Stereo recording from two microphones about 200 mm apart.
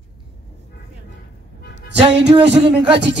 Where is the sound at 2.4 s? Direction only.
30° right (ahead or behind).